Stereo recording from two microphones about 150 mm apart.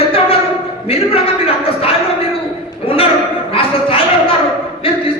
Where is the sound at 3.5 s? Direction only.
40° left (ahead or behind).